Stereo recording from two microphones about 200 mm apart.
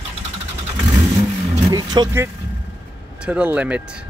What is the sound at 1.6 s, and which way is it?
A man's voice, 20° right (ahead or behind).